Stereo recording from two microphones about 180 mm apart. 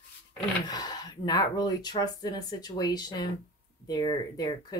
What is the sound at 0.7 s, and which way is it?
Speech, 20° left (ahead or behind).